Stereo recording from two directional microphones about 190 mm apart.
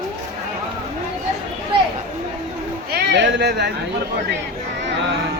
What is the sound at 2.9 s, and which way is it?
Speech, 60° right (ahead or behind).